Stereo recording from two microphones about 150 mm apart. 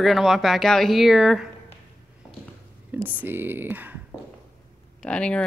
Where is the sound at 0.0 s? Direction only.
Centre (ahead or behind).